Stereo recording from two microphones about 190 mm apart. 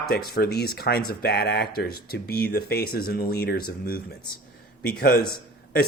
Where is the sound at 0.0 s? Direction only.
55° left (ahead or behind).